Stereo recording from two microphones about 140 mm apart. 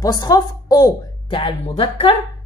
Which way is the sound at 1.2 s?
40° left (ahead or behind).